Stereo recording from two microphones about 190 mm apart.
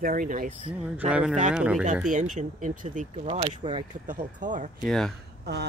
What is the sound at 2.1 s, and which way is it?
Speech, 40° right (ahead or behind).